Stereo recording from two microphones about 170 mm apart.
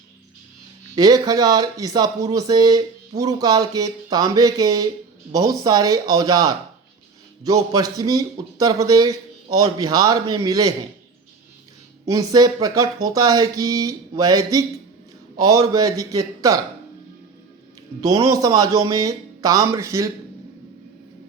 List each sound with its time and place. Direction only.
0.9 s speech: 25° right (ahead or behind)
12.0 s speech: 20° right (ahead or behind)
18.0 s speech: 20° right (ahead or behind)